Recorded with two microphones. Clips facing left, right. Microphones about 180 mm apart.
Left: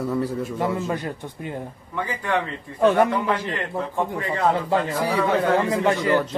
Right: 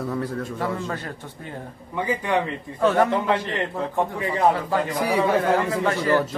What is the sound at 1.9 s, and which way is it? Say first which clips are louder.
Speech: right 2 dB; 15° right (ahead or behind).